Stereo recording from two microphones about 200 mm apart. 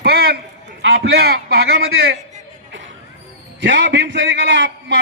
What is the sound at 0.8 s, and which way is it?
A man's voice, 55° right (ahead or behind).